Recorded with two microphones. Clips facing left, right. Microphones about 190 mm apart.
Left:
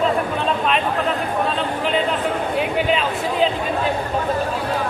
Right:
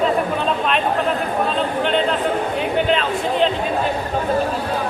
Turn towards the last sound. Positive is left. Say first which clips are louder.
# right 1 dB
turn(degrees=5)  # may be behind; listen again after turning